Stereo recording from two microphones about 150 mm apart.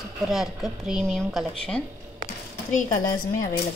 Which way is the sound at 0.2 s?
Centre (ahead or behind).